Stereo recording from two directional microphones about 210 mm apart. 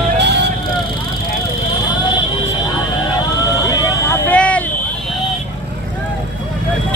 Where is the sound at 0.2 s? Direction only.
55° right (ahead or behind).